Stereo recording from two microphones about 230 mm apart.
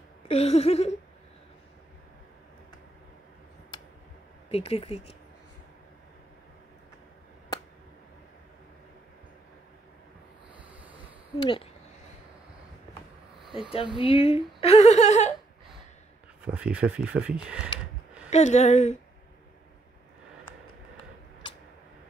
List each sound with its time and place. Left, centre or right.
0.2 s a woman's voice: left
4.5 s a woman's voice: left
10.6 s ocean: centre
11.3 s a woman's voice: left
13.9 s a woman's voice: left
16.4 s speech: centre
18.3 s a woman's voice: left